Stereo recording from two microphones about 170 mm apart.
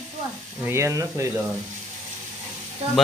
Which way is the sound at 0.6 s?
15° right (ahead or behind).